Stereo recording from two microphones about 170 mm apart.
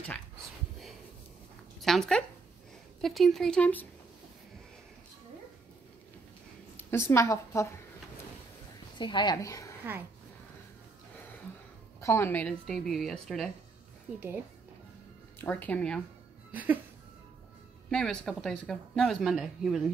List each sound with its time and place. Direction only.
1.8 s speech: centre (ahead or behind)
6.8 s a woman's voice: 15° left (ahead or behind)
8.9 s a woman's voice: 25° left (ahead or behind)
12.0 s speech: 15° left (ahead or behind)
15.3 s speech: 10° left (ahead or behind)
16.5 s a sound: 10° right (ahead or behind)
17.8 s speech: 5° left (ahead or behind)